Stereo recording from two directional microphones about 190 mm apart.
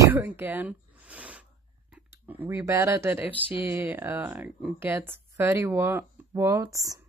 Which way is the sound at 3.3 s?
30° left (ahead or behind).